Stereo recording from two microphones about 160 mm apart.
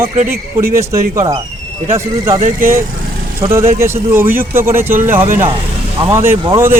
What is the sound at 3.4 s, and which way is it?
Speech, 15° right (ahead or behind).